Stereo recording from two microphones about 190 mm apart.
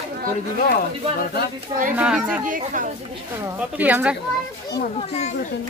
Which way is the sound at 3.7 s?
10° right (ahead or behind).